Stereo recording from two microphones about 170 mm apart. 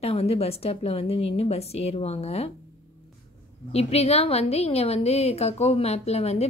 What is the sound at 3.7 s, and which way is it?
A woman's voice, 35° left (ahead or behind).